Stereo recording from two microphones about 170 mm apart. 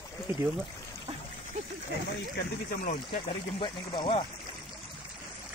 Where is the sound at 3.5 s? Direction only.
30° left (ahead or behind).